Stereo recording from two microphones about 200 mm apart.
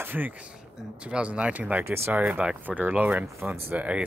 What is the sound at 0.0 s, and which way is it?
Speech, 10° right (ahead or behind).